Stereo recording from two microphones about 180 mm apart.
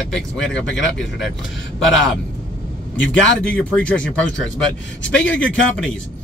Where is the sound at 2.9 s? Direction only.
90° left.